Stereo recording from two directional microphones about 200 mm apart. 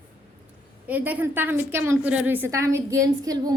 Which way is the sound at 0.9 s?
10° right (ahead or behind).